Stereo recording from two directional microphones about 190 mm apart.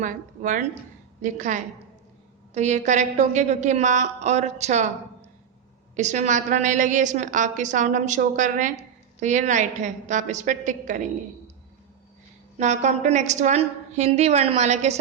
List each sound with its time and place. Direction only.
0.0 s a woman's voice: 40° right (ahead or behind)
6.0 s a woman's voice: 40° right (ahead or behind)
12.5 s a woman's voice: 40° right (ahead or behind)